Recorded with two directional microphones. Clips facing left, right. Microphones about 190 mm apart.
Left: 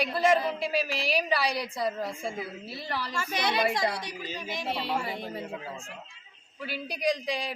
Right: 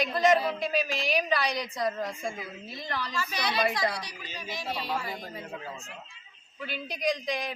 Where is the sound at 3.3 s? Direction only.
25° left (ahead or behind).